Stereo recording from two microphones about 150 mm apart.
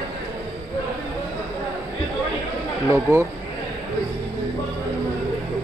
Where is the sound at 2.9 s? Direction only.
15° right (ahead or behind).